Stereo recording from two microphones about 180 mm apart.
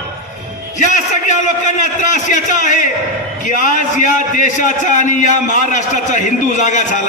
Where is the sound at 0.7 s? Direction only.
45° left (ahead or behind).